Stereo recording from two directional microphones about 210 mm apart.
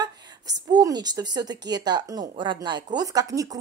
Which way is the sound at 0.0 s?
20° right (ahead or behind).